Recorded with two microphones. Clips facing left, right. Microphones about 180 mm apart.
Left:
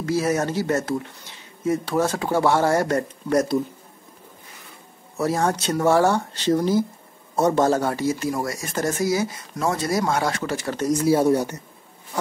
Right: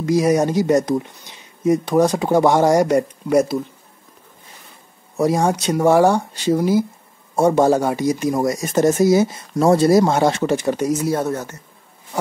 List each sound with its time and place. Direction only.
0.0 s speech: 15° right (ahead or behind)
5.1 s speech: 15° right (ahead or behind)
11.1 s speech: 15° left (ahead or behind)